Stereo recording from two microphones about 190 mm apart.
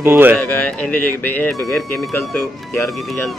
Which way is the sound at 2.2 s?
15° left (ahead or behind).